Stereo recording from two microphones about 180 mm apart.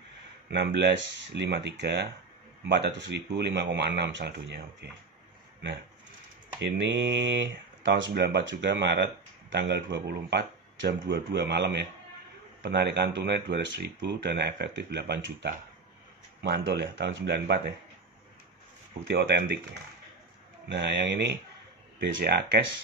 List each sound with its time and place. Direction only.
0.5 s speech: 70° right (ahead or behind)
6.6 s speech: 85° right; by 17.7 s 70° right (ahead or behind)
19.0 s speech: 70° right (ahead or behind)
20.6 s speech: 75° right (ahead or behind)